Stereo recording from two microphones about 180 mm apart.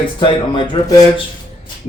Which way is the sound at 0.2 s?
30° left (ahead or behind).